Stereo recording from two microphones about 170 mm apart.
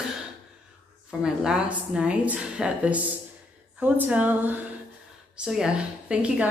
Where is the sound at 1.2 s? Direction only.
5° right (ahead or behind).